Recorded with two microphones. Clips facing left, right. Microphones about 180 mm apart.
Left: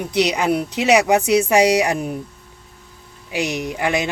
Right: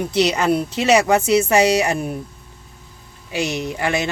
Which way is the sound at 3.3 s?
15° left (ahead or behind).